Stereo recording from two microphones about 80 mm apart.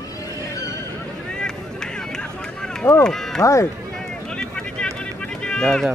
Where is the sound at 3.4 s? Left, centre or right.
Left.